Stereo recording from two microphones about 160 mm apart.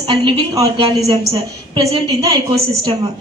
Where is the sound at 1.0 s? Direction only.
40° right (ahead or behind).